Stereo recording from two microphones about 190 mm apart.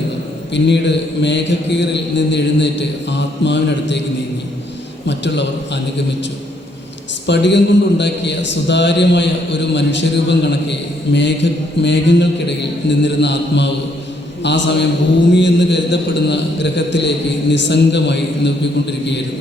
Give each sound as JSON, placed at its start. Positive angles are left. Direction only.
{"t": 0.5, "sound": "a man's voice", "side_deg": 65}
{"t": 5.0, "sound": "a man's voice", "side_deg": 65}
{"t": 7.3, "sound": "a man's voice", "side_deg": 65}